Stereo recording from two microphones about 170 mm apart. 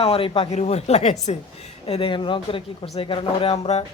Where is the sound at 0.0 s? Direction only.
35° left (ahead or behind).